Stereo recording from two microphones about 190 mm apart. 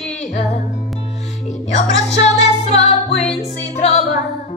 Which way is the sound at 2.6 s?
35° left (ahead or behind).